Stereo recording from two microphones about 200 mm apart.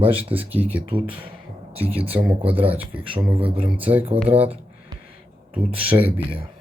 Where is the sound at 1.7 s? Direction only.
30° right (ahead or behind).